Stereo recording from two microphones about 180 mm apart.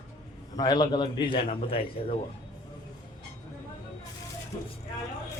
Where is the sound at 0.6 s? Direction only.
25° left (ahead or behind).